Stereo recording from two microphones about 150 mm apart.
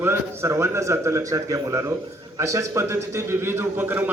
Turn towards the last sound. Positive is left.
turn(degrees=-15)  # may be behind; listen again after turning